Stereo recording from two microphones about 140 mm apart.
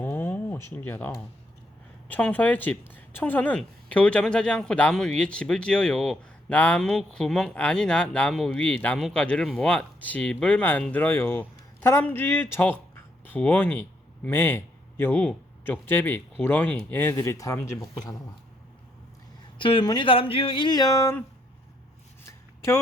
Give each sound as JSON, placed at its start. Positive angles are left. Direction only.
{"t": 0.0, "sound": "a sound", "side_deg": 15}
{"t": 2.0, "sound": "speech", "side_deg": 10}
{"t": 19.5, "sound": "speech", "side_deg": 35}